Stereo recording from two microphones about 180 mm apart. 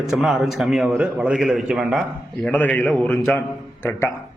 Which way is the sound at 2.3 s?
10° left (ahead or behind).